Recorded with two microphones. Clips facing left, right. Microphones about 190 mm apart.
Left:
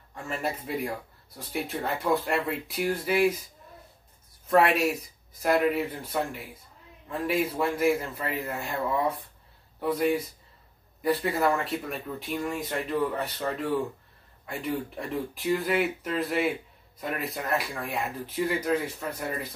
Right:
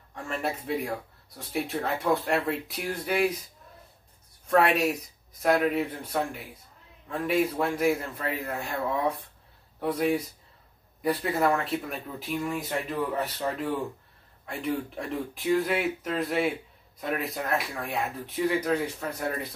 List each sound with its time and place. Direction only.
0.1 s speech: centre (ahead or behind)
4.5 s speech: centre (ahead or behind)